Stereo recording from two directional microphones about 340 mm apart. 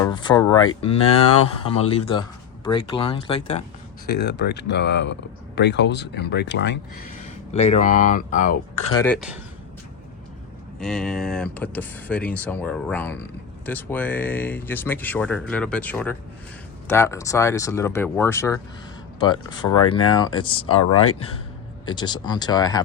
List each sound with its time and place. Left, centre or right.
0.0 s speech: centre
4.0 s speech: left
7.5 s speech: centre
9.0 s speech: centre
10.8 s speech: centre
19.9 s speech: centre
20.9 s speech: left
21.8 s speech: centre